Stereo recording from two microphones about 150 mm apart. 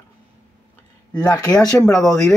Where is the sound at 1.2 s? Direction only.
25° left (ahead or behind).